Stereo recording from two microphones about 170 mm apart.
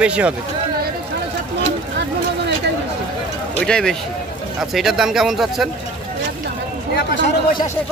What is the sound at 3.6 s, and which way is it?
Speech, 5° left (ahead or behind).